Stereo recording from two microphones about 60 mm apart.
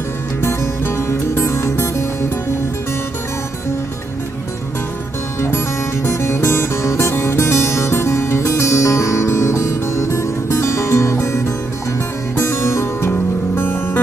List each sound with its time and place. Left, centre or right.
0.4 s music: left
6.0 s music: left
13.1 s music: left